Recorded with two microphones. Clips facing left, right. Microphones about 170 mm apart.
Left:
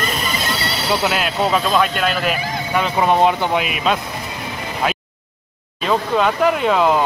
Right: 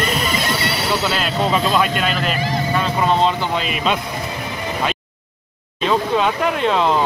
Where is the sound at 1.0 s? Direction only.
10° left (ahead or behind).